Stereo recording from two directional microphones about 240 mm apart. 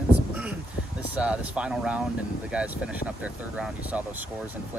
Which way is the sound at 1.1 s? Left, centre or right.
Centre.